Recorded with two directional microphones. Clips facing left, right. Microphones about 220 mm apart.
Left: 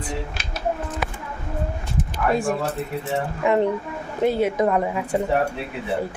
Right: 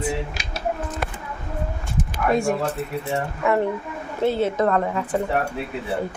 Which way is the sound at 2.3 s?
Centre (ahead or behind).